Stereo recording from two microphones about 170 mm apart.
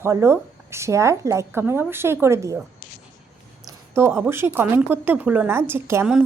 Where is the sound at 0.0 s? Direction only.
15° right (ahead or behind).